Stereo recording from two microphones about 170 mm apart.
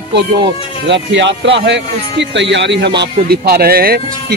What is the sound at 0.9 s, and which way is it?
Speech, 90° right.